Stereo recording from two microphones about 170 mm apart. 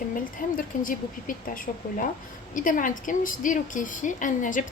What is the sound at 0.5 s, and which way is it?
A woman's voice, 55° left (ahead or behind).